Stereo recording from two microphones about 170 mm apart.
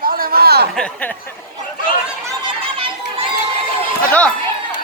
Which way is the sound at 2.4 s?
30° right (ahead or behind).